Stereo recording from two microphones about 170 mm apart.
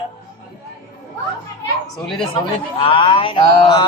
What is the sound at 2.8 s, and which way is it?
A man's voice, 30° left (ahead or behind).